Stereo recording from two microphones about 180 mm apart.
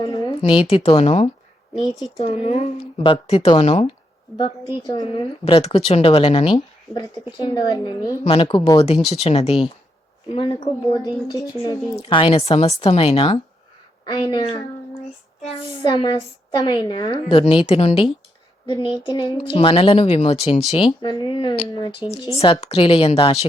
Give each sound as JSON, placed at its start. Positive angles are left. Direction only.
{"t": 0.0, "sound": "speech", "side_deg": 25}
{"t": 4.4, "sound": "speech", "side_deg": 25}
{"t": 9.0, "sound": "speech", "side_deg": 35}
{"t": 15.8, "sound": "speech", "side_deg": 25}